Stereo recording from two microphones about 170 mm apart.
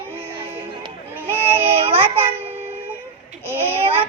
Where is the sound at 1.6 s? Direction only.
35° right (ahead or behind).